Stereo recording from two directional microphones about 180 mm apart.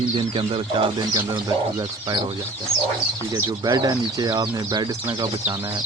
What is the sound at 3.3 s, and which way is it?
Speech, 20° right (ahead or behind).